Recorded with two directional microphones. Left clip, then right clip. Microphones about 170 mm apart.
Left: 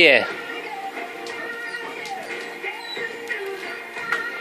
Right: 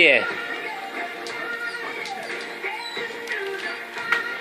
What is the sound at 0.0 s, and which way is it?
Speech, 25° left (ahead or behind).